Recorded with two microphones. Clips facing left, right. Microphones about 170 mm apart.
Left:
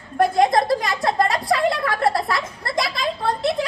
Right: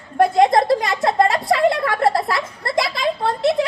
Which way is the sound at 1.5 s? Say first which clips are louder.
Right 3 dB; 25° right (ahead or behind).